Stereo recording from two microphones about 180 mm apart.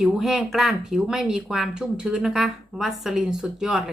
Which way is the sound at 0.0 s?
Centre (ahead or behind).